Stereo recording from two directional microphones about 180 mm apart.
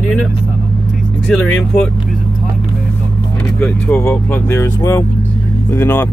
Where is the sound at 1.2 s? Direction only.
5° left (ahead or behind).